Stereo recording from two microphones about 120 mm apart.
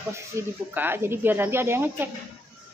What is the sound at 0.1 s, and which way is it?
Speech, 20° right (ahead or behind).